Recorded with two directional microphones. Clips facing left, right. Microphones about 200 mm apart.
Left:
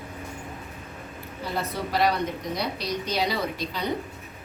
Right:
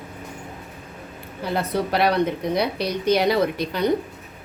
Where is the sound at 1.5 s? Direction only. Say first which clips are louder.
Right 4 dB; 65° right (ahead or behind).